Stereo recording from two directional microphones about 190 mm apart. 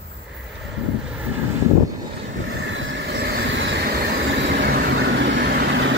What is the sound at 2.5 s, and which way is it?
Vehicle, 85° right.